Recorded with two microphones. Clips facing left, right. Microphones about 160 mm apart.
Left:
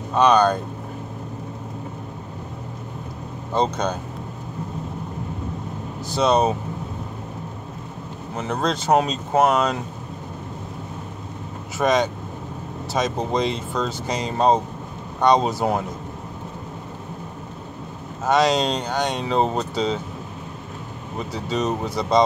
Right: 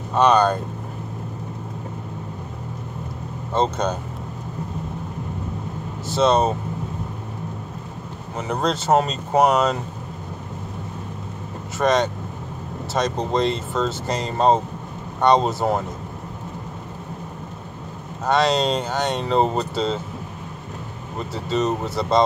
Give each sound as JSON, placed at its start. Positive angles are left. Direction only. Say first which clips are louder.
{"t": 0.1, "sound": "speech", "louder": "even", "side_deg": -5}
{"t": 3.5, "sound": "speech", "louder": "right 1 dB", "side_deg": -5}
{"t": 6.0, "sound": "speech", "louder": "right 1 dB", "side_deg": 0}
{"t": 8.4, "sound": "speech", "louder": "right 1 dB", "side_deg": -5}
{"t": 11.8, "sound": "speech", "louder": "even", "side_deg": 0}
{"t": 18.2, "sound": "speech", "louder": "even", "side_deg": 0}
{"t": 21.3, "sound": "speech", "louder": "right 2 dB", "side_deg": 0}